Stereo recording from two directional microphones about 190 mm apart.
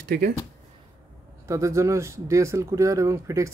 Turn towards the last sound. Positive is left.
turn(degrees=-15)  # may be behind; listen again after turning